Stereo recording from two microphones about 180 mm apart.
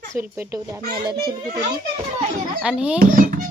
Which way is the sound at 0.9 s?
60° right (ahead or behind).